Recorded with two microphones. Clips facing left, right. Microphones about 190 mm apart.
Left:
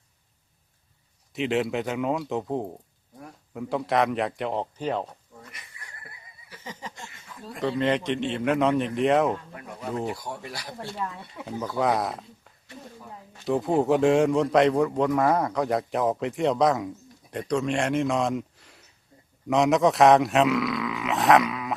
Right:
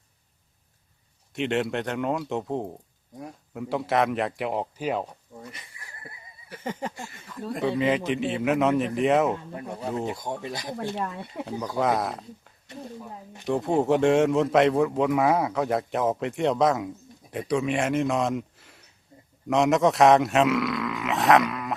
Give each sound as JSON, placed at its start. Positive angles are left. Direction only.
{"t": 1.3, "sound": "a man's voice", "side_deg": 0}
{"t": 5.4, "sound": "a sound", "side_deg": -30}
{"t": 6.5, "sound": "a sound", "side_deg": -55}
{"t": 7.6, "sound": "a man's voice", "side_deg": -5}
{"t": 9.6, "sound": "speech", "side_deg": -30}
{"t": 11.3, "sound": "speech", "side_deg": -35}
{"t": 11.8, "sound": "a man's voice", "side_deg": 0}
{"t": 13.5, "sound": "a man's voice", "side_deg": 0}
{"t": 19.1, "sound": "a sound", "side_deg": -20}
{"t": 19.5, "sound": "a man's voice", "side_deg": 0}